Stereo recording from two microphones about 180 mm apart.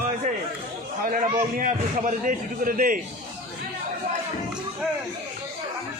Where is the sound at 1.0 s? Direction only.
50° right (ahead or behind).